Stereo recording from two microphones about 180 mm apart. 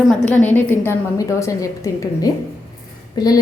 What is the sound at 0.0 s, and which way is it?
A woman's voice, 10° left (ahead or behind).